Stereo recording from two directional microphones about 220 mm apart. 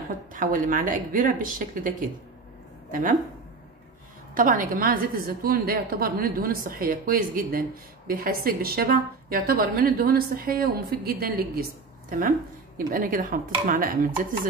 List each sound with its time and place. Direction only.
0.3 s speech: 40° right (ahead or behind)
4.4 s a woman's voice: 35° right (ahead or behind)
12.7 s speech: 40° right (ahead or behind)